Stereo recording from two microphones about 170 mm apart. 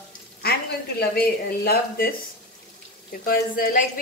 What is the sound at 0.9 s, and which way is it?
Speech, 65° left (ahead or behind).